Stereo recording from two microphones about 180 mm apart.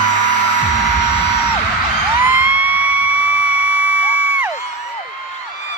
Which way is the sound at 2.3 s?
10° right (ahead or behind).